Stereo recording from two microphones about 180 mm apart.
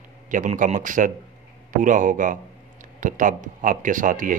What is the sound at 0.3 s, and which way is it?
Speech, 45° right (ahead or behind).